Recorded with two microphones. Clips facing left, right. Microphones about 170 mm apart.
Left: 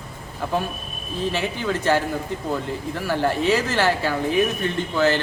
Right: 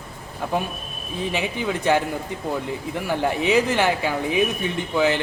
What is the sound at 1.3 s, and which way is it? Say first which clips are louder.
Speech: even; 15° right (ahead or behind).